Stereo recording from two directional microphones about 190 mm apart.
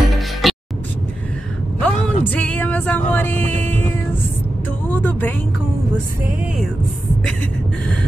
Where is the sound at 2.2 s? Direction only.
10° left (ahead or behind).